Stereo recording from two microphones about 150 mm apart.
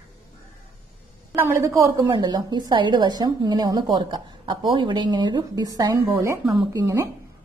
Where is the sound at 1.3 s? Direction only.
15° right (ahead or behind).